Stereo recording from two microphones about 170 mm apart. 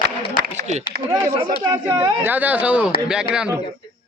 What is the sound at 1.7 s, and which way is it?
A man's voice, 20° right (ahead or behind).